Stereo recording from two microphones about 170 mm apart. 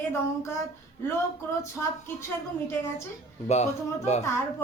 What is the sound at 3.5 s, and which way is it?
Speech, 40° left (ahead or behind).